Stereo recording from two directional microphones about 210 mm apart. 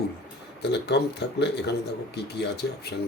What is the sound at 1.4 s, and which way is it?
Speech, 55° left (ahead or behind).